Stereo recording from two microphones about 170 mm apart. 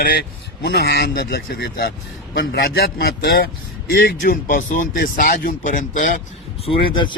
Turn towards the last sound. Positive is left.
turn(degrees=30)  # may be behind; listen again after turning